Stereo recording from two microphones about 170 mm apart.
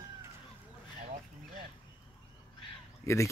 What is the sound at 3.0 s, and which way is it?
Speech, 15° left (ahead or behind).